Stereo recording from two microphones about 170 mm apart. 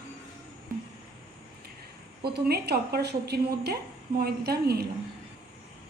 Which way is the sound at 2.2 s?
70° right (ahead or behind).